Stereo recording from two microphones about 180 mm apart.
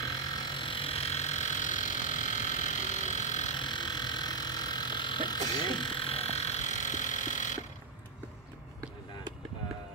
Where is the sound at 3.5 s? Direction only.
25° left (ahead or behind); by 7.6 s 45° left (ahead or behind).